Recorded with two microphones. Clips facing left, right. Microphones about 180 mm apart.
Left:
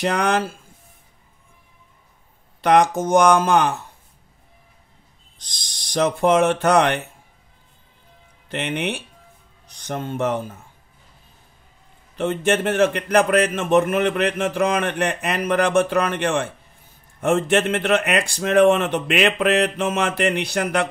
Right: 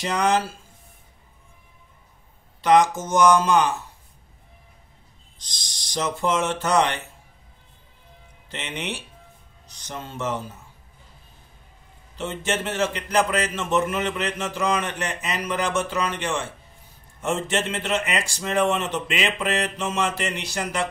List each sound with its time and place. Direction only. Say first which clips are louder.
0.0 s speech: left 2 dB; 60° left (ahead or behind)
2.6 s speech: left 2 dB; 60° left (ahead or behind)
5.4 s speech: even; 55° left (ahead or behind)
8.5 s speech: left 7 dB; 60° left (ahead or behind)
12.2 s speech: left 7 dB; 55° left (ahead or behind)